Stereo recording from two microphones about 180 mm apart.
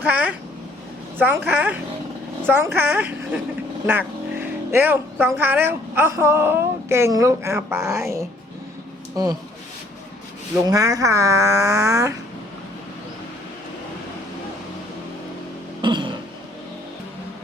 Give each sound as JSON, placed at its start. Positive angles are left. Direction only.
{"t": 0.0, "sound": "speech", "side_deg": -10}
{"t": 10.7, "sound": "speech", "side_deg": -20}
{"t": 15.8, "sound": "a sound", "side_deg": -25}